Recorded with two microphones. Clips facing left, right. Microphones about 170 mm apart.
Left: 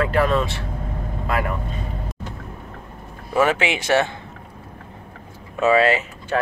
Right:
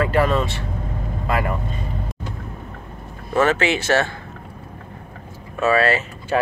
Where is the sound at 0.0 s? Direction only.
Centre (ahead or behind).